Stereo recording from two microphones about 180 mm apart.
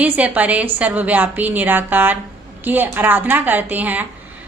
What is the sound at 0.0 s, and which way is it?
A woman's voice, 10° right (ahead or behind).